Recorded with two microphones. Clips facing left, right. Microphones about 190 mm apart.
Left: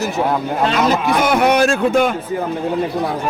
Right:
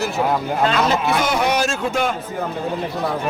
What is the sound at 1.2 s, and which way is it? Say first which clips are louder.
Speech: left 5 dB; 55° left (ahead or behind).